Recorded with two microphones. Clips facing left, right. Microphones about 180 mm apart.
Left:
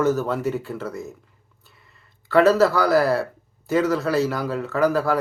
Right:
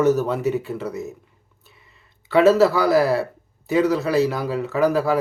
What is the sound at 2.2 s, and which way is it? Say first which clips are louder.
Speech: right 1 dB; centre (ahead or behind).